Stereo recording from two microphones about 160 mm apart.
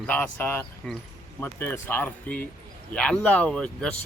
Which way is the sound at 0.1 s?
10° left (ahead or behind).